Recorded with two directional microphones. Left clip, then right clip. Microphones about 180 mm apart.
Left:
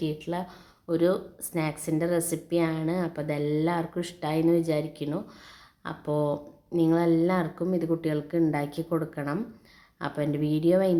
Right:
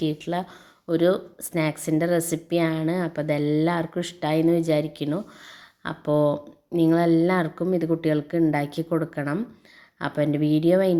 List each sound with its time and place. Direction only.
0.0 s a woman's voice: 25° right (ahead or behind)